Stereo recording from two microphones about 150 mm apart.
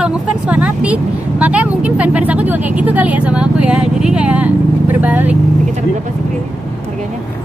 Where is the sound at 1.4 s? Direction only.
10° right (ahead or behind).